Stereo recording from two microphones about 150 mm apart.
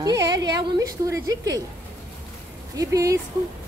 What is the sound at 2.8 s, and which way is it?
Speech, 20° right (ahead or behind).